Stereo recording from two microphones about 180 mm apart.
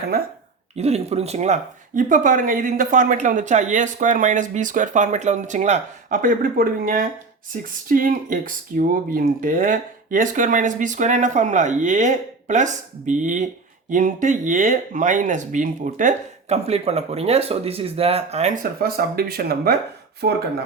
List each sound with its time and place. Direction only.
0.8 s speech: 35° right (ahead or behind)
18.8 s speech: 55° right (ahead or behind)